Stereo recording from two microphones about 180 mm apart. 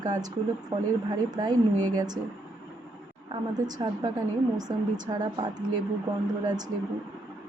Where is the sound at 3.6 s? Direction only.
20° right (ahead or behind).